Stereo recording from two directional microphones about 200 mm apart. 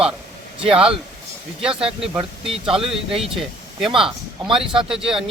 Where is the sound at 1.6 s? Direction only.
5° right (ahead or behind).